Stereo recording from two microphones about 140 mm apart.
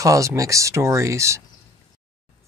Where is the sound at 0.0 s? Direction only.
25° right (ahead or behind).